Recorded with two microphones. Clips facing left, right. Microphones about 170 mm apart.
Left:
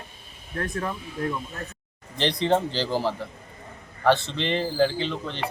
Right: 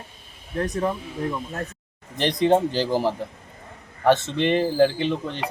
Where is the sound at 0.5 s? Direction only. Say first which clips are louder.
Right 5 dB; 15° right (ahead or behind).